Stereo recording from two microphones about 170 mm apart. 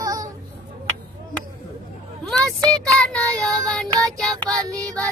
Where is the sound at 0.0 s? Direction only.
20° right (ahead or behind).